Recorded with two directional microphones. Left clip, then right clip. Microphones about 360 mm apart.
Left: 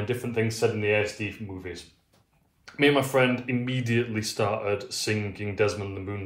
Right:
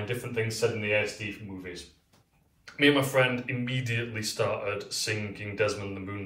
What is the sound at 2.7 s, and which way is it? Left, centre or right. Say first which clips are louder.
Speech: left 1 dB; centre.